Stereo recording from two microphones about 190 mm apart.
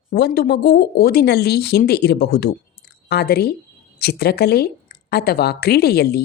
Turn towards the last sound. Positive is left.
turn(degrees=55)  # may be behind; listen again after turning